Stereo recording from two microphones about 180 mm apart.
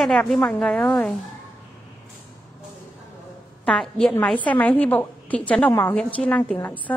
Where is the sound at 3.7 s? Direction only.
5° left (ahead or behind).